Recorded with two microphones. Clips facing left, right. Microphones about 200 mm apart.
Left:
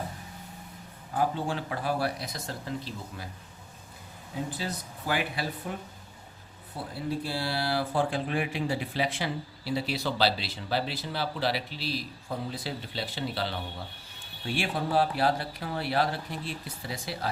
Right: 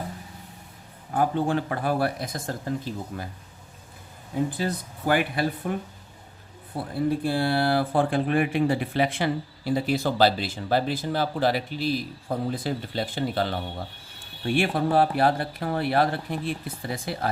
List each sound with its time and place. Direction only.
1.1 s speech: 55° right (ahead or behind)
4.5 s speech: 55° right (ahead or behind)
6.7 s speech: 55° right (ahead or behind)